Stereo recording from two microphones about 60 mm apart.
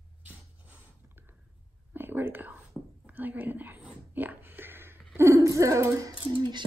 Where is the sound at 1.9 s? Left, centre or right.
Right.